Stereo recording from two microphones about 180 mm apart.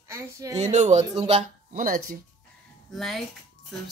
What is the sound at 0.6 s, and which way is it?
Speech, 40° right (ahead or behind).